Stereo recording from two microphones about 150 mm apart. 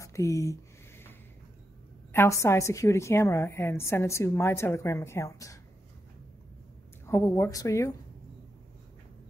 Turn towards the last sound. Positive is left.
turn(degrees=20)  # may be behind; listen again after turning